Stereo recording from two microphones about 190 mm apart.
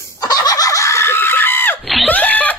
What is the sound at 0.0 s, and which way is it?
Screaming, 20° left (ahead or behind).